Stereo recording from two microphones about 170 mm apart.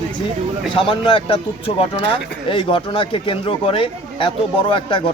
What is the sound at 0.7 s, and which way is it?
Speech, 30° left (ahead or behind).